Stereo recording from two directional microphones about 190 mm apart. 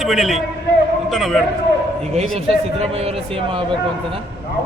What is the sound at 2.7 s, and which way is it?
Speech, 30° right (ahead or behind).